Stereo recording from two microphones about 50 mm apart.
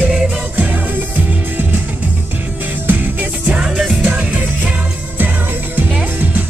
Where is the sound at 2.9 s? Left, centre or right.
Right.